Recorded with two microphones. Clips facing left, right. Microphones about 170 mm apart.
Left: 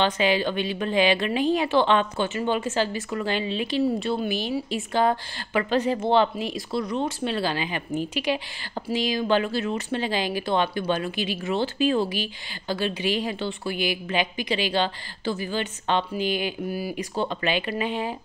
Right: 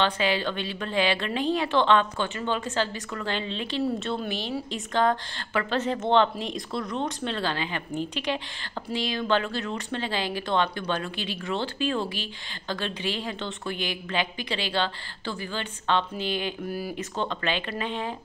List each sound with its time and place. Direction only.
0.0 s speech: 15° left (ahead or behind)